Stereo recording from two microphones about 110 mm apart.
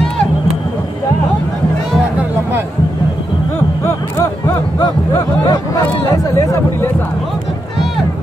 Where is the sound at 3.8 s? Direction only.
25° left (ahead or behind).